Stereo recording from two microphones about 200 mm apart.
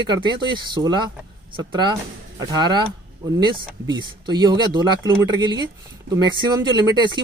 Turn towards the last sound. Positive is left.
turn(degrees=-20)  # may be behind; listen again after turning